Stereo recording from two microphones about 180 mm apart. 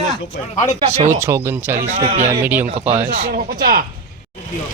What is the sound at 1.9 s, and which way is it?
Speech, 35° right (ahead or behind).